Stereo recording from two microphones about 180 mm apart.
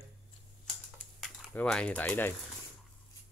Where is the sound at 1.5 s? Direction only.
5° left (ahead or behind).